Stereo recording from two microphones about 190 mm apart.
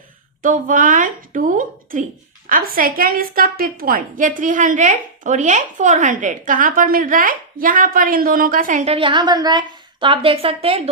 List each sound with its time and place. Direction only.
0.4 s a woman's voice: 45° right (ahead or behind)